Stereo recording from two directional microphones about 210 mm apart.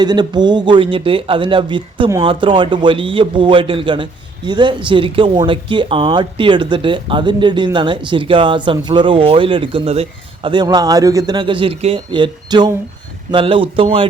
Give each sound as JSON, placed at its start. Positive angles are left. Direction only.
{"t": 0.0, "sound": "speech", "side_deg": -20}